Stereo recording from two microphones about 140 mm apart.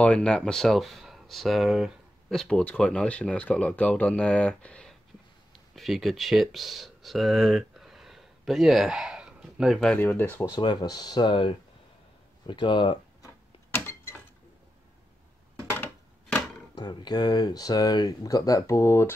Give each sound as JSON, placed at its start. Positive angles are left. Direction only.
{"t": 0.0, "sound": "speech", "side_deg": 5}
{"t": 9.9, "sound": "speech", "side_deg": 15}
{"t": 10.5, "sound": "speech", "side_deg": 30}
{"t": 13.7, "sound": "a sound", "side_deg": 15}
{"t": 15.7, "sound": "a sound", "side_deg": 10}
{"t": 16.7, "sound": "speech", "side_deg": 30}